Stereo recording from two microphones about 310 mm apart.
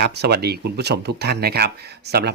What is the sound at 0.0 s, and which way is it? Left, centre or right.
Speech, right.